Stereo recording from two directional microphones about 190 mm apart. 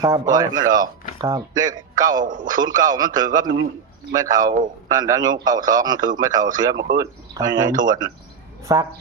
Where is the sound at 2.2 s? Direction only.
45° right (ahead or behind).